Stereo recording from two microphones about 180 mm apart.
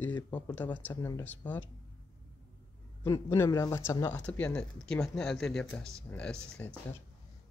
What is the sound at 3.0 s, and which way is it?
Speech, 15° left (ahead or behind).